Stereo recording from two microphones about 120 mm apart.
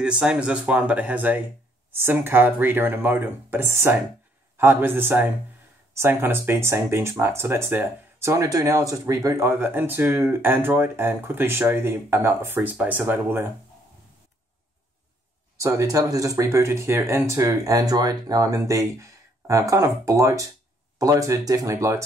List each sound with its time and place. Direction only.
0.0 s speech: 10° right (ahead or behind)
15.5 s speech: 25° right (ahead or behind)